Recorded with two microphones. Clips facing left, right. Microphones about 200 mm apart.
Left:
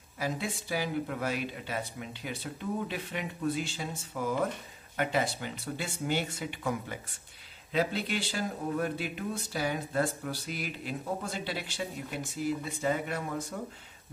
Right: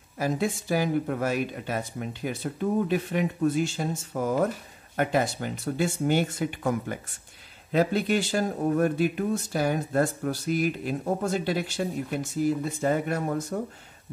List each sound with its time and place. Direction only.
0.2 s speech: 45° right (ahead or behind)